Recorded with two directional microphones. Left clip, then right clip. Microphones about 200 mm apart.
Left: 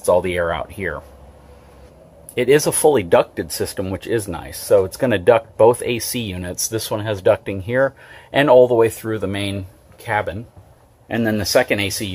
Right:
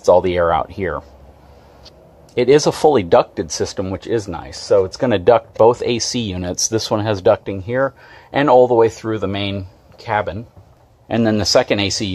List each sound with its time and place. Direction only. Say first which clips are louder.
0.0 s speech: right 4 dB; 15° right (ahead or behind)
2.3 s speech: right 2 dB; 10° right (ahead or behind)
7.5 s speech: left 1 dB; centre (ahead or behind); by 12.1 s 15° right (ahead or behind)